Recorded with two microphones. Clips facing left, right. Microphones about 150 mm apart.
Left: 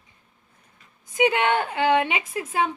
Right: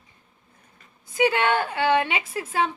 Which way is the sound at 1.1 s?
20° left (ahead or behind).